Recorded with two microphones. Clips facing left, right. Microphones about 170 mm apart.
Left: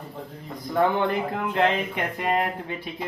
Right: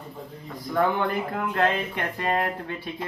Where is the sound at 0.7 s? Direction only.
20° left (ahead or behind).